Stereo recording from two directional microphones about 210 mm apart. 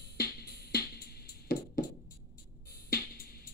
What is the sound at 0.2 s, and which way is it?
Music, 50° left (ahead or behind).